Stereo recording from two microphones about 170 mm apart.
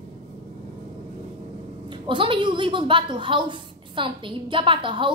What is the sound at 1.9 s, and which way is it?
A woman's voice, 30° right (ahead or behind).